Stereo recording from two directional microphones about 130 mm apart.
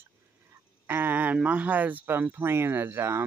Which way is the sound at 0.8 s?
15° right (ahead or behind).